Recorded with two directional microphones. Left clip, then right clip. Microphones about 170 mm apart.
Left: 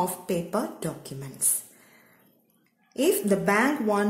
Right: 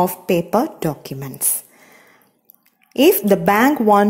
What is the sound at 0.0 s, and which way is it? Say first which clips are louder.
Speech: right 10 dB; 40° right (ahead or behind).